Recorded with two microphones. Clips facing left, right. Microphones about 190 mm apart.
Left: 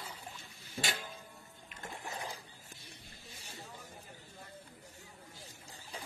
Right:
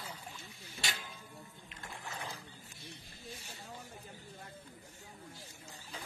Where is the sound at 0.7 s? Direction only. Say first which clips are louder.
Left 5 dB; 50° left (ahead or behind).